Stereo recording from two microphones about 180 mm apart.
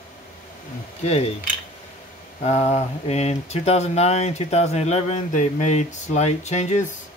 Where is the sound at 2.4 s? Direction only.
35° left (ahead or behind).